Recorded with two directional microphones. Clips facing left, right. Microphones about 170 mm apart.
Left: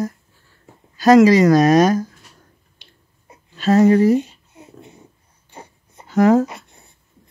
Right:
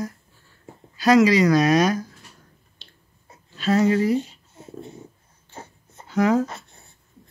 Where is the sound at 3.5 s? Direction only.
45° left (ahead or behind).